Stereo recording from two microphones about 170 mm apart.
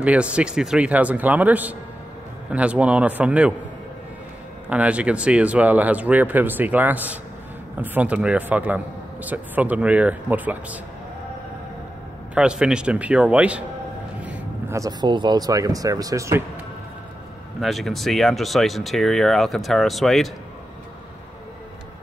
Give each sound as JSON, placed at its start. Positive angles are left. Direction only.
{"t": 0.0, "sound": "a man's voice", "side_deg": -5}
{"t": 4.6, "sound": "a man's voice", "side_deg": -10}
{"t": 12.4, "sound": "a man's voice", "side_deg": -5}
{"t": 17.6, "sound": "speech", "side_deg": 0}